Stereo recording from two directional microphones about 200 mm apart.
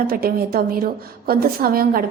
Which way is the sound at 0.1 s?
50° right (ahead or behind).